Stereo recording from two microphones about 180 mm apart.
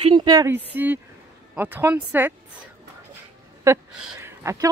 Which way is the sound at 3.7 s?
15° right (ahead or behind).